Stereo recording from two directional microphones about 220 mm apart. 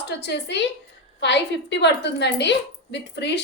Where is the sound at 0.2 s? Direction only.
50° left (ahead or behind).